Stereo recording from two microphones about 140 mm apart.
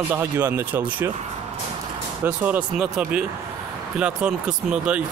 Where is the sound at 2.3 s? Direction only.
10° right (ahead or behind).